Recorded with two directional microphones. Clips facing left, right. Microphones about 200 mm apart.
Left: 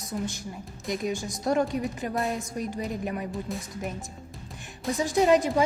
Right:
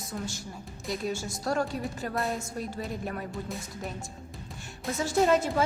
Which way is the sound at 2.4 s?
15° left (ahead or behind).